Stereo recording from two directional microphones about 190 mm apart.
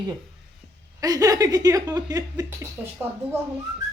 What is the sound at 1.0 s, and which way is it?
Speech, 20° right (ahead or behind).